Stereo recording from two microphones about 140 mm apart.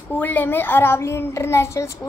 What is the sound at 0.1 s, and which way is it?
A child's voice, 10° left (ahead or behind).